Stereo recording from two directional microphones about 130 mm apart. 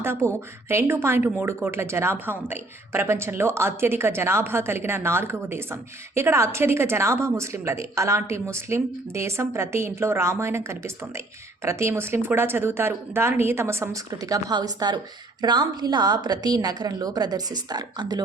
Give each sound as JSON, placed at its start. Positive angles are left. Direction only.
{"t": 0.0, "sound": "speech", "side_deg": -20}